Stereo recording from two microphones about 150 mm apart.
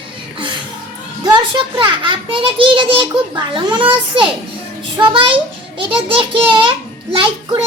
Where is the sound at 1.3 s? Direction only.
35° right (ahead or behind).